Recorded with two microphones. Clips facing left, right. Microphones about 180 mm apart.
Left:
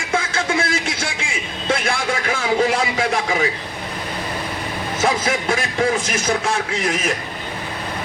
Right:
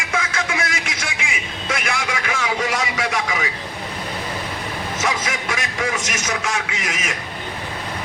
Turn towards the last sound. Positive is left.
turn(degrees=35)  # may be behind; listen again after turning